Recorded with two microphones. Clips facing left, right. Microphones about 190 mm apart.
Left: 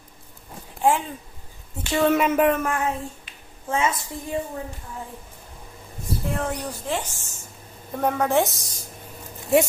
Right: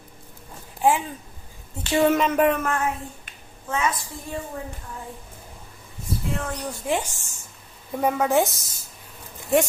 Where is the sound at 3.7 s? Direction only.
25° left (ahead or behind).